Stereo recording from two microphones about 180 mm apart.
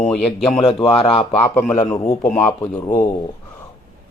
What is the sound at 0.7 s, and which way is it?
Speech, 30° left (ahead or behind).